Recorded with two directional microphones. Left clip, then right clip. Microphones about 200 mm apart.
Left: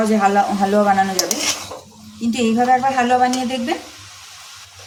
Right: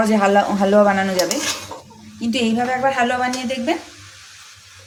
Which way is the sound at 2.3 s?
35° right (ahead or behind).